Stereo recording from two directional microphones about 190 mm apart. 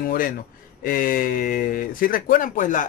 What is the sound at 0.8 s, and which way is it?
Speech, 45° left (ahead or behind).